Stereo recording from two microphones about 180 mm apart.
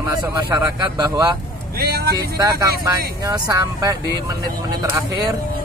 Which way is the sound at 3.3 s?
15° right (ahead or behind).